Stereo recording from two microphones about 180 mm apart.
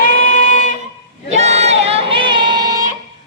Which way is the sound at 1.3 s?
40° right (ahead or behind).